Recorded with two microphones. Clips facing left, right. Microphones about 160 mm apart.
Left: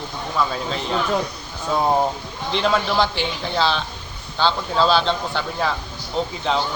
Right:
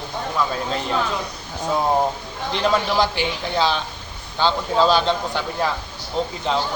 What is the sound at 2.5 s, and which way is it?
A man's voice, 5° right (ahead or behind).